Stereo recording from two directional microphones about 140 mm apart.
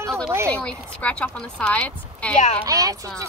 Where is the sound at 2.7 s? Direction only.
25° right (ahead or behind).